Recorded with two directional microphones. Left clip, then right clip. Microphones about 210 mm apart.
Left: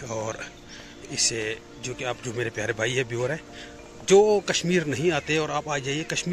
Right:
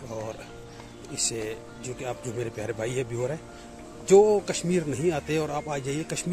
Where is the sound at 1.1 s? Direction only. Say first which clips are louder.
Left 5 dB; centre (ahead or behind).